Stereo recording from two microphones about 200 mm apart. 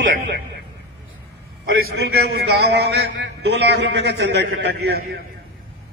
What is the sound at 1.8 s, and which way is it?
A man's voice, 55° right (ahead or behind).